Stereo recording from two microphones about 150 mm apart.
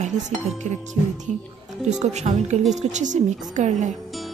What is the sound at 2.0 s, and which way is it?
Speech, 50° right (ahead or behind).